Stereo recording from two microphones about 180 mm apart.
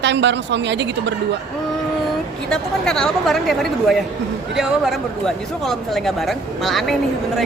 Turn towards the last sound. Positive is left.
turn(degrees=0)  # may be behind; listen again after turning